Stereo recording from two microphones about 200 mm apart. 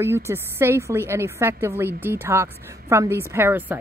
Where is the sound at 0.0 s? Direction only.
10° right (ahead or behind).